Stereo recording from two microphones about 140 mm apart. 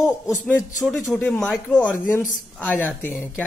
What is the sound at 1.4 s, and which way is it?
Speech, 5° left (ahead or behind).